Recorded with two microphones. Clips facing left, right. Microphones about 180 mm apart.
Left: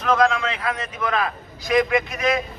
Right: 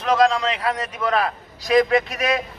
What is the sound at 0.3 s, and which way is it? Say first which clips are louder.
A man's voice: right 2 dB; 35° right (ahead or behind).